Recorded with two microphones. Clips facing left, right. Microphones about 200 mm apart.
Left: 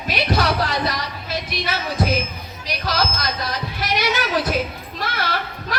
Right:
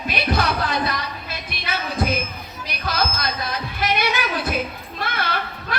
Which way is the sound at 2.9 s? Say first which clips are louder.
Left 1 dB; 55° right (ahead or behind).